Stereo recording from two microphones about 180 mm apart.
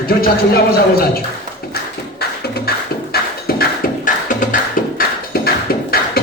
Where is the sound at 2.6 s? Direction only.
60° left (ahead or behind).